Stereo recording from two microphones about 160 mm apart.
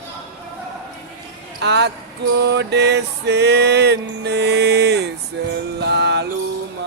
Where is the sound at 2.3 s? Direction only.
90° right.